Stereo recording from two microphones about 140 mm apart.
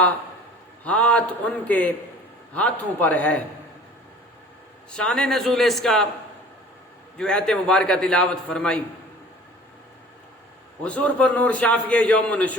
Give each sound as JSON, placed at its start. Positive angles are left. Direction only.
{"t": 0.9, "sound": "a man's voice", "side_deg": 10}
{"t": 4.9, "sound": "a man's voice", "side_deg": 5}
{"t": 7.2, "sound": "a man's voice", "side_deg": 5}
{"t": 10.8, "sound": "a man's voice", "side_deg": 10}